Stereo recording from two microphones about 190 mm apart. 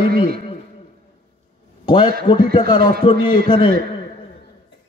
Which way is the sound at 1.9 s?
25° left (ahead or behind).